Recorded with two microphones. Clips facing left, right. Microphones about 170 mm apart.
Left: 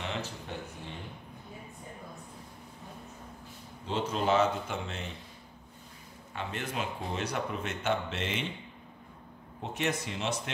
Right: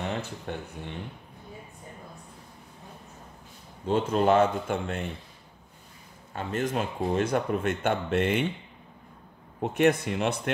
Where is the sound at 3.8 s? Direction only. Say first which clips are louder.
Right 7 dB; 50° right (ahead or behind).